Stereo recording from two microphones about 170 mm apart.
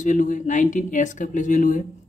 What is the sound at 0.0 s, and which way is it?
Speech, 50° left (ahead or behind).